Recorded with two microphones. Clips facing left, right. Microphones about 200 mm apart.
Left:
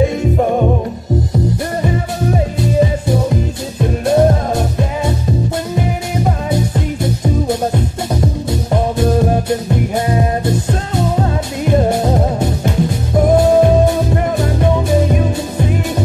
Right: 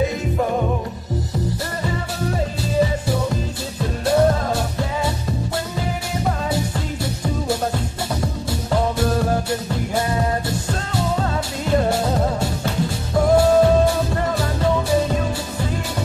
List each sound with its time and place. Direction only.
1.8 s music: 20° left (ahead or behind)